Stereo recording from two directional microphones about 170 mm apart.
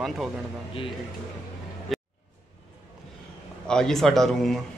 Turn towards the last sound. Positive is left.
turn(degrees=0)  # may be behind; listen again after turning